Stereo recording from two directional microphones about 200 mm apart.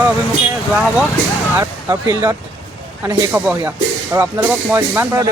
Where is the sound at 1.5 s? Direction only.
15° right (ahead or behind).